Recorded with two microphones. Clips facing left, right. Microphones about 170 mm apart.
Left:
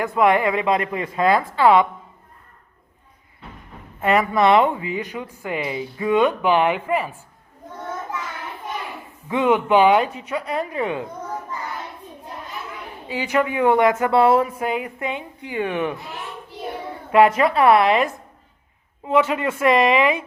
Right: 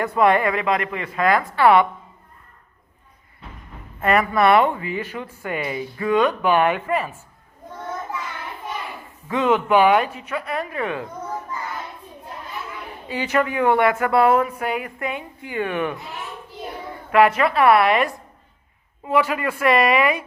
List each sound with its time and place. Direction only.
0.2 s speech: 15° left (ahead or behind)
4.0 s speech: 15° left (ahead or behind)
9.3 s speech: 15° left (ahead or behind)
13.1 s speech: 15° left (ahead or behind)
17.1 s speech: 25° left (ahead or behind)